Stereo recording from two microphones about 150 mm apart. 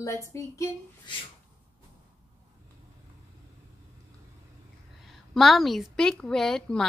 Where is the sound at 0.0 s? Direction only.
20° left (ahead or behind).